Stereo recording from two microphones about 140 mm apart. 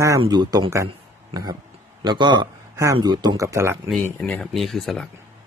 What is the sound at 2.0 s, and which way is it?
A man's voice, 30° right (ahead or behind).